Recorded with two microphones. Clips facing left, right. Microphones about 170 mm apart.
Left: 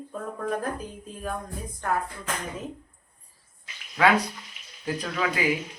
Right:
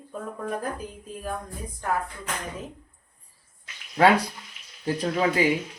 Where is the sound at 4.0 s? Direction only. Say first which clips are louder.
Right 3 dB; 35° right (ahead or behind).